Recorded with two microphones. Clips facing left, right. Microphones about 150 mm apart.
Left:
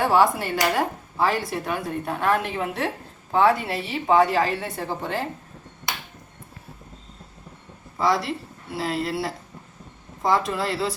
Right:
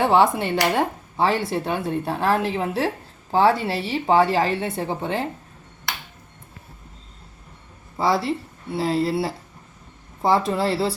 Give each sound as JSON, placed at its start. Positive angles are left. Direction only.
{"t": 0.0, "sound": "speech", "side_deg": -25}
{"t": 7.9, "sound": "speech", "side_deg": -30}